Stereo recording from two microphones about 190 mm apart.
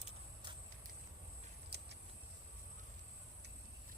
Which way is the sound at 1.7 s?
60° right (ahead or behind).